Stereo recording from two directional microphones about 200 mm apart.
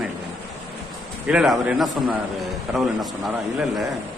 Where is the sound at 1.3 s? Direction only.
5° right (ahead or behind).